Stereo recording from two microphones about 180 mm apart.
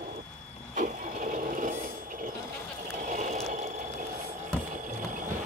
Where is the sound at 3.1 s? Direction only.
45° right (ahead or behind).